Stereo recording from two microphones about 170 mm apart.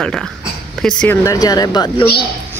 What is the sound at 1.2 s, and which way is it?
Speech, 20° left (ahead or behind).